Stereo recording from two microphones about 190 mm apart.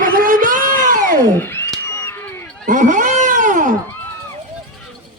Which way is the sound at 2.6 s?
40° right (ahead or behind).